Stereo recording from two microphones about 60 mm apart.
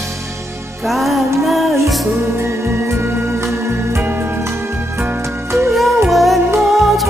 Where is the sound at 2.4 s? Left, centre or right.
Right.